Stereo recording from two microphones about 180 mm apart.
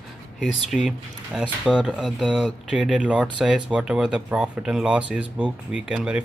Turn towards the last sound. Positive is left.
turn(degrees=-5)  # may be behind; listen again after turning